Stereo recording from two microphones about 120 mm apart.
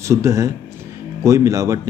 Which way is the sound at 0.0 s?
25° right (ahead or behind).